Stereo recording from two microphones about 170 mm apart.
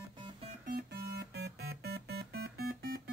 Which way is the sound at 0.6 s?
65° right (ahead or behind).